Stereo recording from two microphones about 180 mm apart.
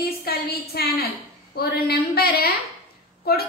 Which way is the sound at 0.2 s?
60° left (ahead or behind).